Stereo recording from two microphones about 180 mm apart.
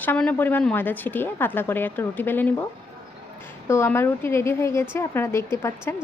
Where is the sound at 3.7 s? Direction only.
15° left (ahead or behind).